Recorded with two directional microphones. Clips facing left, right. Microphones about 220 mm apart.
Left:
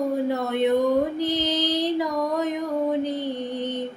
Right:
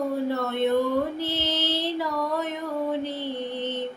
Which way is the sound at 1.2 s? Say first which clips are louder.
Left 5 dB; 15° left (ahead or behind).